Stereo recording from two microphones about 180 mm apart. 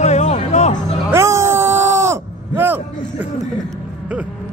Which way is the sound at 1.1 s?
15° right (ahead or behind).